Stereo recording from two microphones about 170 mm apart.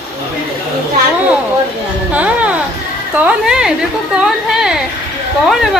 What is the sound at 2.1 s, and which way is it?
A woman's voice, 10° right (ahead or behind).